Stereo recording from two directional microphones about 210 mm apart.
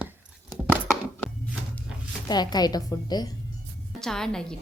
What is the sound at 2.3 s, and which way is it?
A woman's voice, 20° left (ahead or behind).